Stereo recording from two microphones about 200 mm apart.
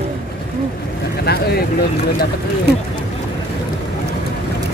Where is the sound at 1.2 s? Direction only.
55° left (ahead or behind).